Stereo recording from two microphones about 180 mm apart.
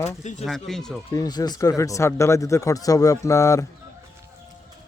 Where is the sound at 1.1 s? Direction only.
20° left (ahead or behind).